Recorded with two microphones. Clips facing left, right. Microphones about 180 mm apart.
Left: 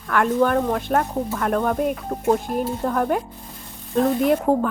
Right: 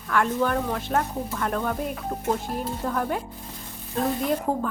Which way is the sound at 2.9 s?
50° left (ahead or behind).